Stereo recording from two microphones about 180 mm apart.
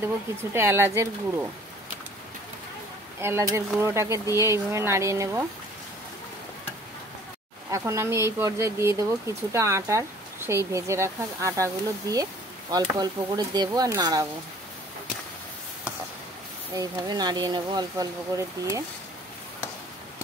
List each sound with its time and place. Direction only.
0.0 s speech: 15° right (ahead or behind)
3.2 s speech: 15° right (ahead or behind)
7.7 s speech: 15° right (ahead or behind)
16.7 s speech: 20° right (ahead or behind)